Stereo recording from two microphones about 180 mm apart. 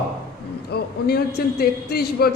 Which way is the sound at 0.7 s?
60° left (ahead or behind).